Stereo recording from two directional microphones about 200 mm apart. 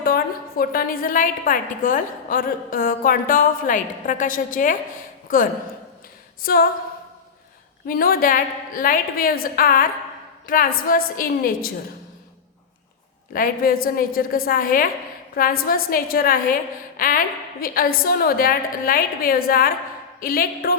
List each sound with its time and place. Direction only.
0.0 s a woman's voice: 45° left (ahead or behind)
7.9 s a woman's voice: 45° left (ahead or behind)
13.3 s a woman's voice: 45° left (ahead or behind)